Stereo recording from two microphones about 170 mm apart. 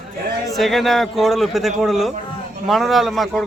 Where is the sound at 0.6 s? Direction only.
Centre (ahead or behind).